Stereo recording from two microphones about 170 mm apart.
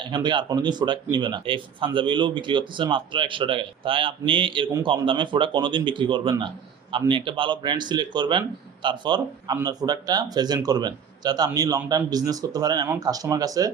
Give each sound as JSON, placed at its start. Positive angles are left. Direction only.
{"t": 0.0, "sound": "speech", "side_deg": -25}